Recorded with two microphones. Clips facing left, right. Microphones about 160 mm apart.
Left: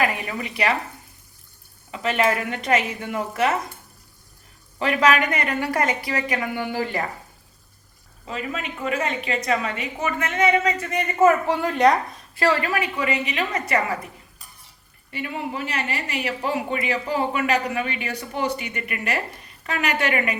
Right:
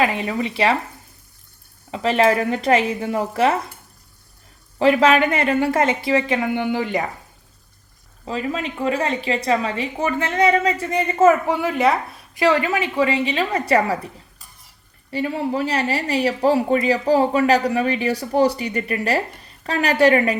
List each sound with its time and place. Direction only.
0.0 s a woman's voice: 25° right (ahead or behind)
1.9 s speech: 30° right (ahead or behind)
4.8 s a woman's voice: 30° right (ahead or behind)
8.2 s speech: 35° right (ahead or behind)
11.3 s speech: 10° right (ahead or behind)
12.3 s a woman's voice: 20° right (ahead or behind)
15.1 s speech: 35° right (ahead or behind)